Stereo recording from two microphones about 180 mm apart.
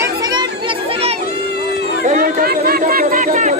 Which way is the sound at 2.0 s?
50° right (ahead or behind).